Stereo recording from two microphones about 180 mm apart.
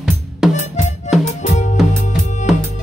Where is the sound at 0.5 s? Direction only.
40° left (ahead or behind).